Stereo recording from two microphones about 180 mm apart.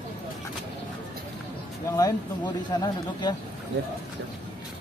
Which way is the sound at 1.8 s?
20° left (ahead or behind).